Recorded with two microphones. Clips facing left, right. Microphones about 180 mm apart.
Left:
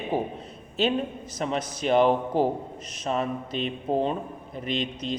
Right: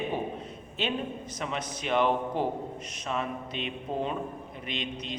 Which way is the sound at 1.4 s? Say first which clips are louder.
Left 7 dB; 35° left (ahead or behind).